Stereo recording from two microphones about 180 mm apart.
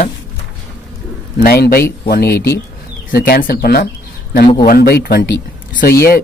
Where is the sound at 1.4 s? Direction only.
55° left (ahead or behind).